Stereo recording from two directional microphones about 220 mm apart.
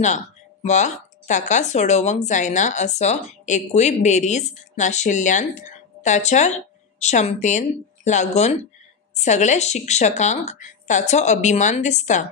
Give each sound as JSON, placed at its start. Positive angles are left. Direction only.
{"t": 0.0, "sound": "speech", "side_deg": 30}